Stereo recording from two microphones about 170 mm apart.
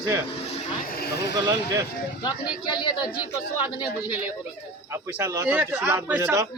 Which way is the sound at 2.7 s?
25° left (ahead or behind).